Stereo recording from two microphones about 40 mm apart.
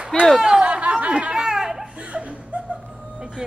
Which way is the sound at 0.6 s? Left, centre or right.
Right.